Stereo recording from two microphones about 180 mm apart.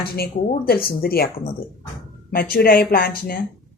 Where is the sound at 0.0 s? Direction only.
60° left (ahead or behind).